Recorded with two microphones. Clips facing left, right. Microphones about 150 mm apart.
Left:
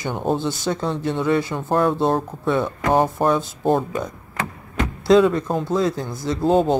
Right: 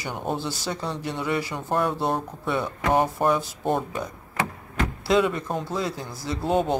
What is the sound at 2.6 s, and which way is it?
Speech, 35° left (ahead or behind).